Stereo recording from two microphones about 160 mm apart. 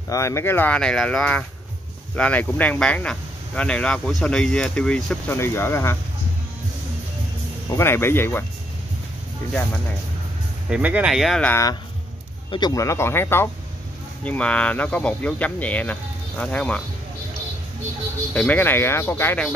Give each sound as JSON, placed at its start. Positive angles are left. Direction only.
{"t": 0.1, "sound": "speech", "side_deg": 20}
{"t": 7.7, "sound": "speech", "side_deg": 15}
{"t": 10.7, "sound": "speech", "side_deg": -10}
{"t": 12.4, "sound": "speech", "side_deg": 25}
{"t": 18.3, "sound": "speech", "side_deg": 10}